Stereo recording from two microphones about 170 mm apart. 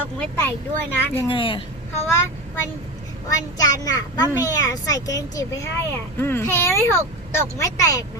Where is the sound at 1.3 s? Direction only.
30° left (ahead or behind).